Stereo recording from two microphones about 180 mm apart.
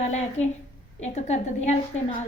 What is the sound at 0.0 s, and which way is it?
A woman's voice, 40° left (ahead or behind).